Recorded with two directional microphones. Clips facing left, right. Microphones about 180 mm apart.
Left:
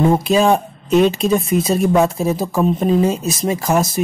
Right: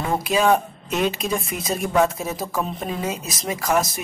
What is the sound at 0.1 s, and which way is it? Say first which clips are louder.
Speech: left 5 dB; 25° left (ahead or behind).